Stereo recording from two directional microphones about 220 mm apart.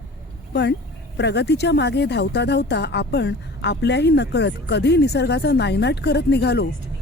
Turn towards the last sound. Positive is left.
turn(degrees=50)  # may be behind; listen again after turning